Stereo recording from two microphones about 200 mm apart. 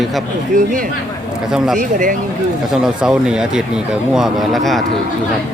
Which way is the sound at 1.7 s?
40° right (ahead or behind).